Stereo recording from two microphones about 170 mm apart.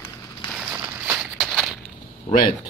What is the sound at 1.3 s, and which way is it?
Walk, centre (ahead or behind).